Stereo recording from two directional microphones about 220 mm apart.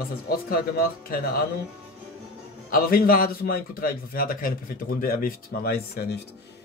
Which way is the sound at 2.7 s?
40° left (ahead or behind).